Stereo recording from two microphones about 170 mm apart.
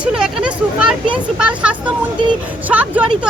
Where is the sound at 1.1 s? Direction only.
5° right (ahead or behind).